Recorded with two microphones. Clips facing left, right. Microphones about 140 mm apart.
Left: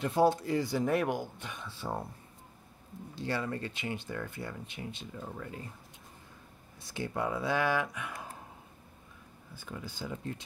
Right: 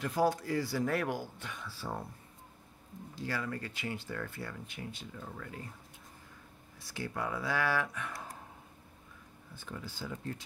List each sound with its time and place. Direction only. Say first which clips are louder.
0.0 s speech: left 4 dB; 25° left (ahead or behind)
3.2 s speech: left 3 dB; 25° left (ahead or behind)
6.8 s speech: left 3 dB; 25° left (ahead or behind)
9.6 s speech: left 2 dB; 10° left (ahead or behind)